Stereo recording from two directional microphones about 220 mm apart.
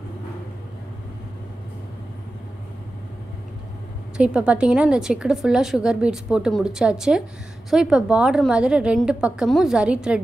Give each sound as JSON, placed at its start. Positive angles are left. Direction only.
{"t": 4.2, "sound": "a woman's voice", "side_deg": -5}